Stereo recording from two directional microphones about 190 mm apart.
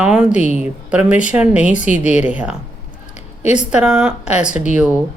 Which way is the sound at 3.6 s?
5° right (ahead or behind).